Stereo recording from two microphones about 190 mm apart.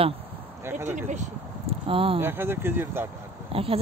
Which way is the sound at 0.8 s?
40° right (ahead or behind).